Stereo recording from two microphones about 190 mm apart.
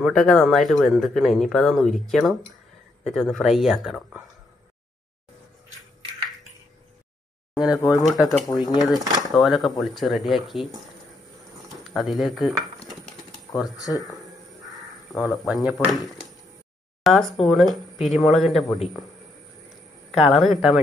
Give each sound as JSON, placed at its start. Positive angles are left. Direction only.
{"t": 0.0, "sound": "speech", "side_deg": 0}
{"t": 7.5, "sound": "speech", "side_deg": -5}
{"t": 8.5, "sound": "speech", "side_deg": 20}
{"t": 8.7, "sound": "speech", "side_deg": 0}
{"t": 11.8, "sound": "speech", "side_deg": 0}
{"t": 13.7, "sound": "speech", "side_deg": 20}
{"t": 14.7, "sound": "speech", "side_deg": 0}
{"t": 17.0, "sound": "speech", "side_deg": 0}
{"t": 20.2, "sound": "speech", "side_deg": 0}